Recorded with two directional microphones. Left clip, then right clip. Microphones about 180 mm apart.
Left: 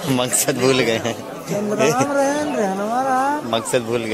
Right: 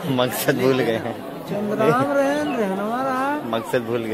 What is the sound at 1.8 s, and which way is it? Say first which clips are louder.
Speech: left 1 dB; 25° left (ahead or behind).